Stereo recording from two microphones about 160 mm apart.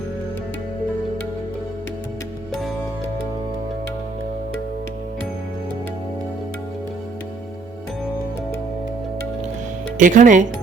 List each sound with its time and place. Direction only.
10.0 s speech: 50° right (ahead or behind)